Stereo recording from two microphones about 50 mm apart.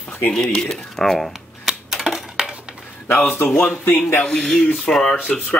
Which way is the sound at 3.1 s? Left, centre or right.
Left.